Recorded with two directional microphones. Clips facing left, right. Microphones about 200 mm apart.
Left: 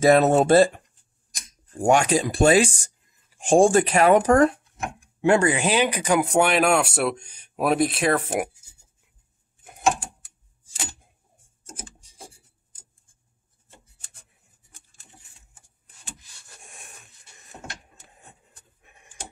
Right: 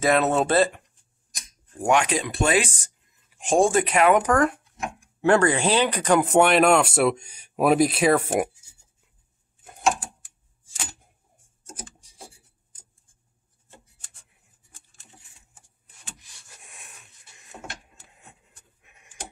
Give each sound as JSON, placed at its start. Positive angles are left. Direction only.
{"t": 0.0, "sound": "speech", "side_deg": 40}
{"t": 1.7, "sound": "speech", "side_deg": 30}
{"t": 5.3, "sound": "speech", "side_deg": 15}
{"t": 6.0, "sound": "speech", "side_deg": 0}
{"t": 16.6, "sound": "dog", "side_deg": 45}
{"t": 18.2, "sound": "a sound", "side_deg": 35}